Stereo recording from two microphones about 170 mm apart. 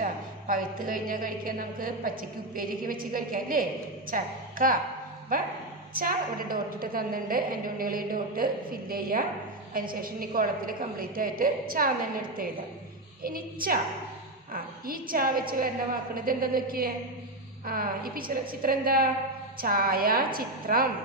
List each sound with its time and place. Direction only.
0.0 s a woman's voice: 55° right (ahead or behind)
5.9 s a woman's voice: 55° right (ahead or behind)